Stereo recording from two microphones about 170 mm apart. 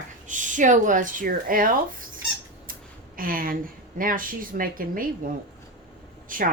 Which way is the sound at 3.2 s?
55° right (ahead or behind).